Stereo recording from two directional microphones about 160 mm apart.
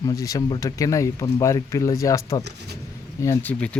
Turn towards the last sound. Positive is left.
turn(degrees=20)  # may be behind; listen again after turning